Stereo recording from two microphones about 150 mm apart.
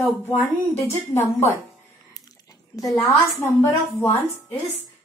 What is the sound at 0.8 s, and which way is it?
Speech, 15° left (ahead or behind).